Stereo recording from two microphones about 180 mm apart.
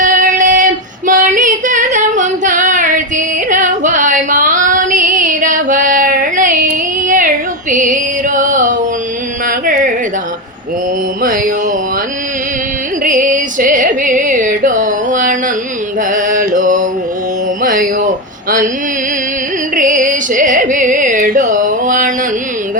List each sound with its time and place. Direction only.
0.0 s female singing: 45° right (ahead or behind)
7.7 s music: 45° right (ahead or behind)
9.5 s a sound: 50° right (ahead or behind)
11.2 s mantra: 50° right (ahead or behind)
13.1 s music: 45° right (ahead or behind)
16.1 s mantra: 45° right (ahead or behind)
19.7 s music: 45° right (ahead or behind)